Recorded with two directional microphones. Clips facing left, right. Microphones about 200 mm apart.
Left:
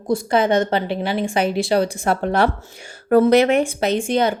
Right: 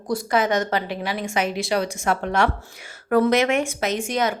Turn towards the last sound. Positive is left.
turn(degrees=30)  # may be behind; listen again after turning